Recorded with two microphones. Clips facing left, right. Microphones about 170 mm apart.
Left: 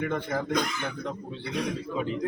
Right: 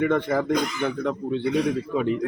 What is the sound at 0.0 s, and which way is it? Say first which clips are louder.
Speech: right 7 dB; 90° right.